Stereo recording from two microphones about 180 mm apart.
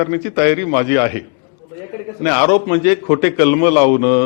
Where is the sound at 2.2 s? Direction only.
15° left (ahead or behind).